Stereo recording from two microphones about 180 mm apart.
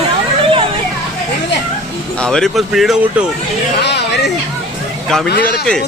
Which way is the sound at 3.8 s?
70° left (ahead or behind).